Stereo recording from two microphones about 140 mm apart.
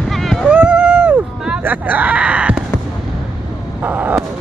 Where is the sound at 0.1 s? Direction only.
Centre (ahead or behind).